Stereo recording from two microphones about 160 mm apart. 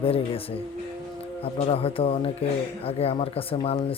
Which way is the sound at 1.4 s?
35° left (ahead or behind).